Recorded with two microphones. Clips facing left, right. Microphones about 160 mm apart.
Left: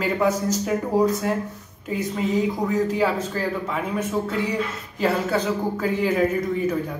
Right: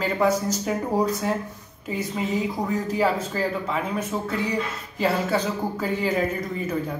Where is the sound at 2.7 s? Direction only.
Centre (ahead or behind).